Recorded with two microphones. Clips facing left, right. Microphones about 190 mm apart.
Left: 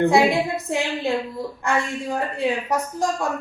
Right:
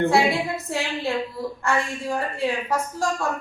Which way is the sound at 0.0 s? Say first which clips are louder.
Left 3 dB; 15° left (ahead or behind).